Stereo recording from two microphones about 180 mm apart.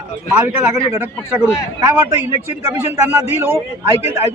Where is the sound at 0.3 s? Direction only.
15° right (ahead or behind).